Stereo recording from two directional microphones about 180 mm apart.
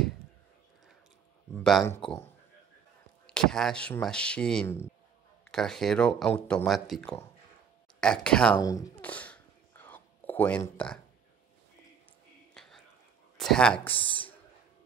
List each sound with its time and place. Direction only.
1.6 s speech: centre (ahead or behind)
3.3 s speech: 5° left (ahead or behind)
8.5 s speech: 20° left (ahead or behind)
9.0 s whispering: 10° left (ahead or behind)
12.5 s whispering: centre (ahead or behind)
13.4 s speech: 5° left (ahead or behind)